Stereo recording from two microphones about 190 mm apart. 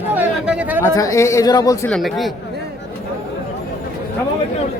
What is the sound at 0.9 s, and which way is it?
Speech, 15° left (ahead or behind).